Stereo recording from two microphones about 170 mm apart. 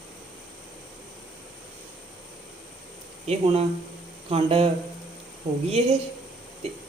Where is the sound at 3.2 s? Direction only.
40° right (ahead or behind).